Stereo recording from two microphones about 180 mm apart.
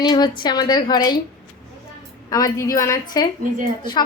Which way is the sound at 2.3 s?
20° left (ahead or behind).